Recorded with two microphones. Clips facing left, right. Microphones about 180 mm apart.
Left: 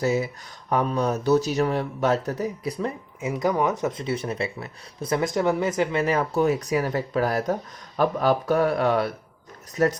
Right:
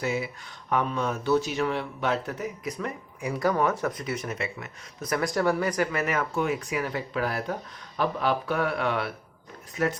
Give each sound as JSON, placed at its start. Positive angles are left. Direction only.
{"t": 0.0, "sound": "speech", "side_deg": 40}